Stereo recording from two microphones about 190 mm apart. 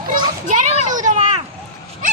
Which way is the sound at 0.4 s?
40° right (ahead or behind).